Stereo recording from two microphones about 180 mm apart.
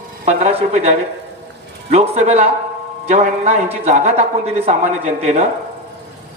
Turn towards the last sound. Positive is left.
turn(degrees=-40)  # may be behind; listen again after turning